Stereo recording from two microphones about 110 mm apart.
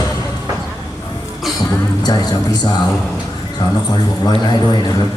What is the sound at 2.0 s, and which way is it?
Music, 40° left (ahead or behind).